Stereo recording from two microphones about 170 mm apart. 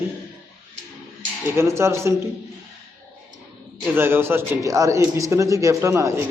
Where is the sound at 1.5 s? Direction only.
15° right (ahead or behind).